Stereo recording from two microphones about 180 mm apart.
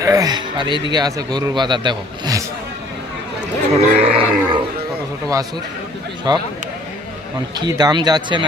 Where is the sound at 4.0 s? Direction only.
30° right (ahead or behind).